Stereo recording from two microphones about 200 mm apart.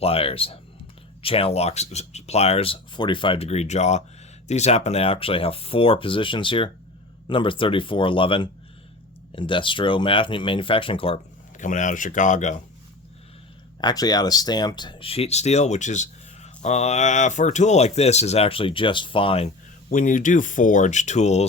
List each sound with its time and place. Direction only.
0.0 s speech: 30° left (ahead or behind)
13.8 s speech: 20° left (ahead or behind)
19.9 s speech: 40° left (ahead or behind)